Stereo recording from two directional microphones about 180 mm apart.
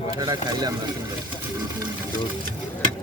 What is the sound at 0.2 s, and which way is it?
Speech, 20° right (ahead or behind).